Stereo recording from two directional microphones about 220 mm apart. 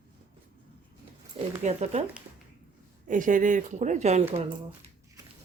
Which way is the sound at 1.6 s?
30° right (ahead or behind).